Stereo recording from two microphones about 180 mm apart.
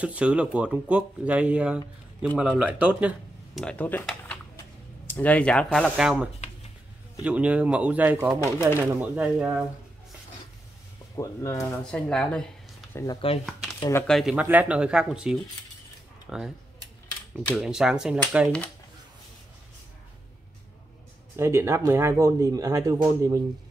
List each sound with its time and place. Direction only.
0.0 s speech: 5° right (ahead or behind)
3.5 s speech: 5° left (ahead or behind)
7.2 s speech: 5° right (ahead or behind)
8.5 s speech: 15° left (ahead or behind)
9.1 s speech: 5° right (ahead or behind)
11.1 s speech: 15° left (ahead or behind)
11.8 s speech: 5° left (ahead or behind)
12.9 s speech: 20° left (ahead or behind)
14.0 s speech: centre (ahead or behind)
21.4 s speech: 15° right (ahead or behind)